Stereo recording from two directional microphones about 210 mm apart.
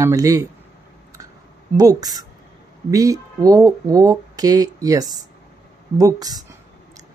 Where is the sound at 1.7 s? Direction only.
20° right (ahead or behind).